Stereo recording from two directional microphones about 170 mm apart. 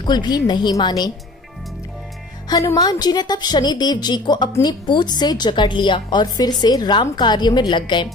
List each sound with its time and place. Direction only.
0.0 s a woman's voice: 25° left (ahead or behind)
2.4 s a woman's voice: 20° left (ahead or behind)